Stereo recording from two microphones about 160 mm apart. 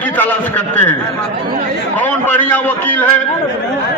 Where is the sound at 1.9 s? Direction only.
10° left (ahead or behind).